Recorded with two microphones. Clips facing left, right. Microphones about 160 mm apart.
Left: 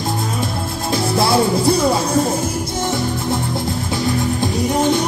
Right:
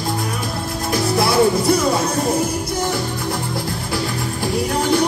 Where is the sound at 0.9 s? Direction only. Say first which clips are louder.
Even; 30° left (ahead or behind).